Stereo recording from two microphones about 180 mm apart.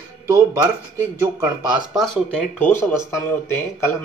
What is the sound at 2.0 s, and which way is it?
Speech, 5° left (ahead or behind).